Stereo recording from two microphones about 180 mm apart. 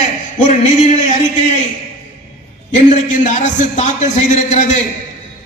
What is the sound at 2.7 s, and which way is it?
A man's voice, 45° left (ahead or behind).